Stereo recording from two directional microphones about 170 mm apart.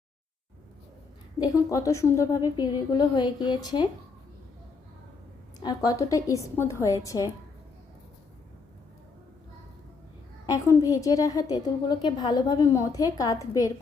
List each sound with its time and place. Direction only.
1.7 s a woman's voice: 20° left (ahead or behind)
5.5 s a woman's voice: 20° left (ahead or behind)
10.4 s a woman's voice: 20° left (ahead or behind)